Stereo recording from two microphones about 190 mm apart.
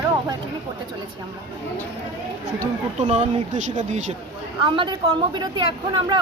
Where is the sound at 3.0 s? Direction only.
35° right (ahead or behind).